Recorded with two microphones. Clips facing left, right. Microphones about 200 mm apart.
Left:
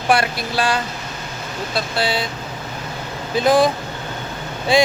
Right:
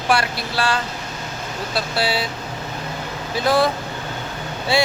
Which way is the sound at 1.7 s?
5° right (ahead or behind).